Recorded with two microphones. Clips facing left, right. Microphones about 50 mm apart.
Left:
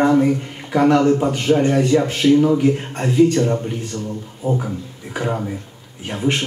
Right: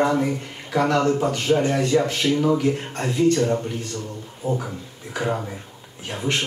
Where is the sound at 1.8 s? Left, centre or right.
Left.